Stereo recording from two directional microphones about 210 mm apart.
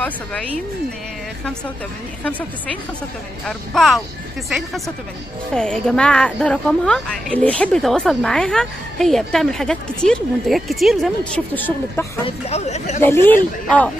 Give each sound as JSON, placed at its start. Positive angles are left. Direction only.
{"t": 0.0, "sound": "a woman's voice", "side_deg": 5}
{"t": 3.4, "sound": "a woman's voice", "side_deg": 0}
{"t": 12.3, "sound": "speech", "side_deg": 30}
{"t": 13.0, "sound": "a woman's voice", "side_deg": 10}